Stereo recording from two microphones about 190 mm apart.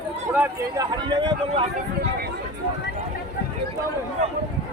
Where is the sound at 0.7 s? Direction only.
25° right (ahead or behind).